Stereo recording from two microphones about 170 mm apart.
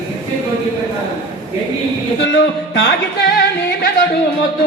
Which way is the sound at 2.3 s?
80° left.